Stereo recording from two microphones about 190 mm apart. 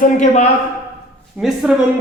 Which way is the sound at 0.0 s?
40° left (ahead or behind).